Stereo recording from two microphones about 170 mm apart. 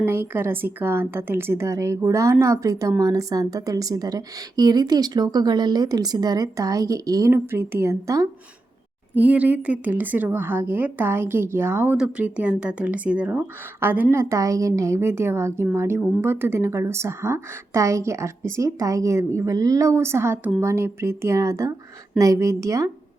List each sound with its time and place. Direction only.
0.0 s a woman's voice: 15° right (ahead or behind)
9.1 s a woman's voice: 10° right (ahead or behind)